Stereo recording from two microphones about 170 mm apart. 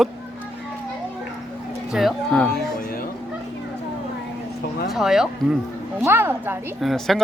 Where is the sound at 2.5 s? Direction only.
60° left (ahead or behind).